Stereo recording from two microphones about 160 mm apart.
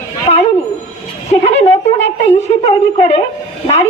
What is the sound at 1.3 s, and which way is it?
A woman's voice, 40° left (ahead or behind).